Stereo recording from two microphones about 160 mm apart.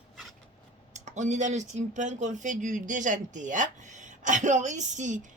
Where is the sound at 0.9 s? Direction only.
50° right (ahead or behind).